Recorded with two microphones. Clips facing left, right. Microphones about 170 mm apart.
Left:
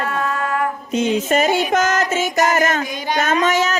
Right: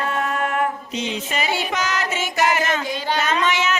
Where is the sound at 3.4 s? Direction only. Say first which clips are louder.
Left 4 dB; 40° left (ahead or behind).